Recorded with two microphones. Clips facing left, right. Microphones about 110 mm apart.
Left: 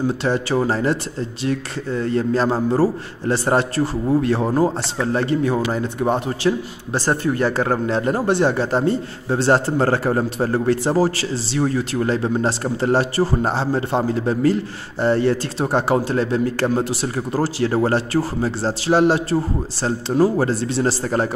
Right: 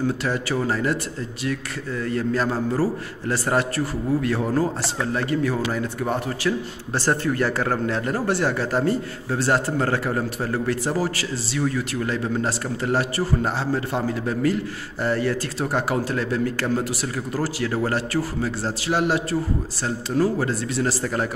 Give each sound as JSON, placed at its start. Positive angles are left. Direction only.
{"t": 0.2, "sound": "a man's voice", "side_deg": 30}